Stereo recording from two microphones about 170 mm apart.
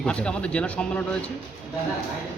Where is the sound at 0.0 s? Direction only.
5° left (ahead or behind).